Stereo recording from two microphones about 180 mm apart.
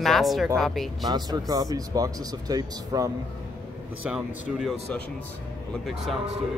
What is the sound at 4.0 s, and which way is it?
Speech, 5° right (ahead or behind).